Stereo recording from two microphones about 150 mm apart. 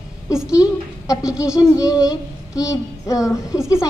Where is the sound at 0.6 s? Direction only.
20° left (ahead or behind).